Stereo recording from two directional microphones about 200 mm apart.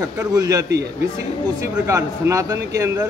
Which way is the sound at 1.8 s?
15° right (ahead or behind).